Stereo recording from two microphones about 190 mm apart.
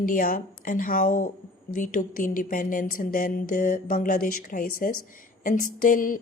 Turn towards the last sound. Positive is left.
turn(degrees=45)  # may be behind; listen again after turning